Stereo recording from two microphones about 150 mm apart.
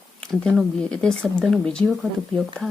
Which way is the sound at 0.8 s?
5° left (ahead or behind).